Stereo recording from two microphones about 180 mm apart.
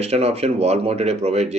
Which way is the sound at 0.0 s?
35° right (ahead or behind).